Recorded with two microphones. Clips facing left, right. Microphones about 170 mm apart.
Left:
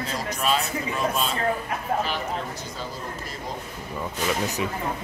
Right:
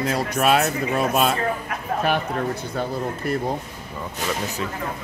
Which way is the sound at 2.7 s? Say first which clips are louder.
Right 8 dB; 60° right (ahead or behind).